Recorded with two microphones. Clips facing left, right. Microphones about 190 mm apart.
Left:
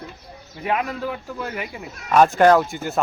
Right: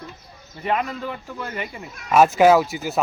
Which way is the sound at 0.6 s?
5° left (ahead or behind).